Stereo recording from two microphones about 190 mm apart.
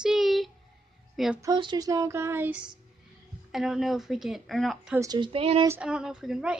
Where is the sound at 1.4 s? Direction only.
20° right (ahead or behind); by 2.8 s 5° right (ahead or behind).